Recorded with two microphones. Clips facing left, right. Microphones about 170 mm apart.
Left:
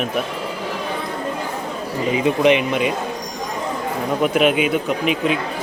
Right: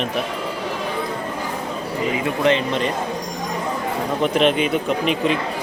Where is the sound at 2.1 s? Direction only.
20° left (ahead or behind).